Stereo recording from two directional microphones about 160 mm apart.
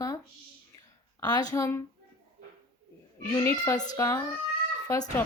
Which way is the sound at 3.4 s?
20° left (ahead or behind).